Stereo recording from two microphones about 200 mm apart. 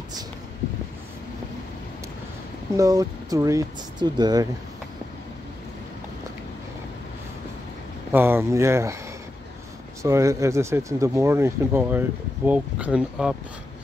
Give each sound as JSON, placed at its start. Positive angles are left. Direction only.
{"t": 2.8, "sound": "speech", "side_deg": -15}
{"t": 8.1, "sound": "speech", "side_deg": -10}
{"t": 10.0, "sound": "speech", "side_deg": -15}